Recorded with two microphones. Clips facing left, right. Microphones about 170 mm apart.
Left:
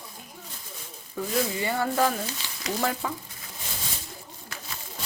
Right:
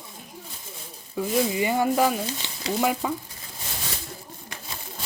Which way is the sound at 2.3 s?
25° right (ahead or behind).